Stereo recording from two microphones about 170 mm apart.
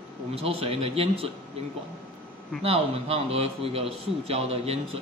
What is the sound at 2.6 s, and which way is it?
A man's voice, 35° right (ahead or behind).